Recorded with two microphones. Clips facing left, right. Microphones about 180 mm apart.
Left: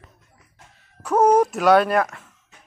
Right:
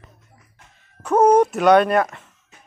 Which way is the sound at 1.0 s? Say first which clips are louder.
Right 2 dB; centre (ahead or behind).